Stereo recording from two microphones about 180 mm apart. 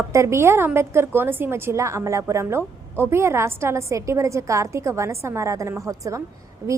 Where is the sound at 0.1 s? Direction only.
15° right (ahead or behind).